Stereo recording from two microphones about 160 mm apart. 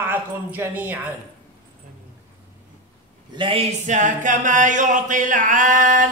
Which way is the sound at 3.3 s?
35° right (ahead or behind).